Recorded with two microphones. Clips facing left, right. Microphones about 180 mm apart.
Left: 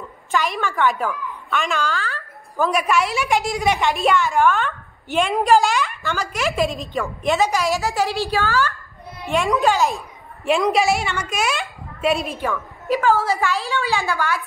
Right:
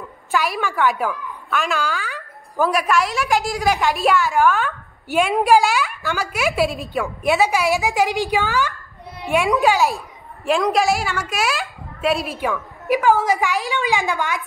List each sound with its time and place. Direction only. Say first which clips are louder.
0.3 s a woman's voice: right 1 dB; 5° right (ahead or behind)
2.7 s a woman's voice: left 2 dB; centre (ahead or behind); by 8.7 s 15° right (ahead or behind)
9.3 s a child's voice: right 1 dB; 5° right (ahead or behind)
12.8 s a woman's voice: right 2 dB; 15° right (ahead or behind)